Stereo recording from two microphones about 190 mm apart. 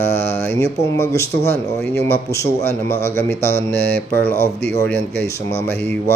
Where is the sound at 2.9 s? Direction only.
15° left (ahead or behind).